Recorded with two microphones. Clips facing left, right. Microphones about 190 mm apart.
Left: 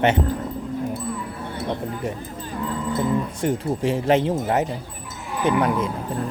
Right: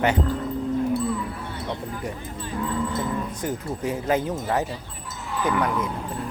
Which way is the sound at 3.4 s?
25° left (ahead or behind).